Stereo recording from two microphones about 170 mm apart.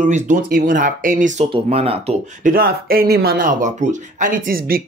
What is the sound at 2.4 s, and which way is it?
Speech, 60° right (ahead or behind).